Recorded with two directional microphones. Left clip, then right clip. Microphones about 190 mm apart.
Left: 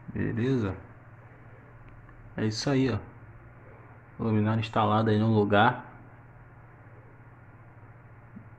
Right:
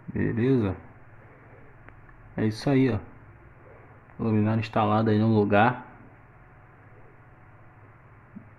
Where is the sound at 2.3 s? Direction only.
15° right (ahead or behind).